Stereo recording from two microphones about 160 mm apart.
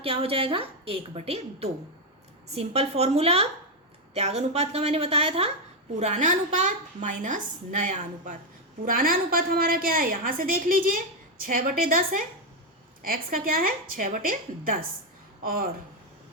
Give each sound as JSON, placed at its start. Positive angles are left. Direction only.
{"t": 0.0, "sound": "a woman's voice", "side_deg": -35}
{"t": 6.0, "sound": "a woman's voice", "side_deg": -50}